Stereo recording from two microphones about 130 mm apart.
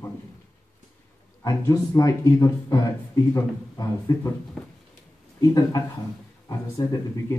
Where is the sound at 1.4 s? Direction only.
25° left (ahead or behind).